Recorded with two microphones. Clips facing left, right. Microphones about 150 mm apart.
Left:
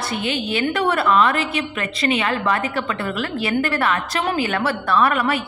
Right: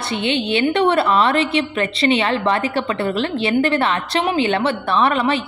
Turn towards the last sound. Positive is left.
turn(degrees=-25)  # may be behind; listen again after turning